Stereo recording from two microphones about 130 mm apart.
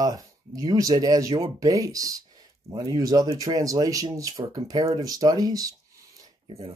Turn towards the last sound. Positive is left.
turn(degrees=-45)  # may be behind; listen again after turning